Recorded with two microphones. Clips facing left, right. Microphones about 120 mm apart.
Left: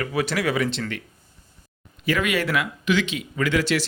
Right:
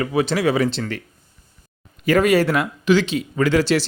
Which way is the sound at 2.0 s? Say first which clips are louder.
Right 8 dB; 40° right (ahead or behind).